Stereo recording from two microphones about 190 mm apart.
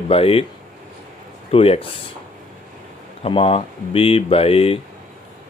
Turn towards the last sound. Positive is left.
turn(degrees=30)  # may be behind; listen again after turning